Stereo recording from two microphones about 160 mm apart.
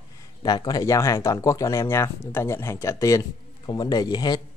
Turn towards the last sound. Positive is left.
turn(degrees=25)  # may be behind; listen again after turning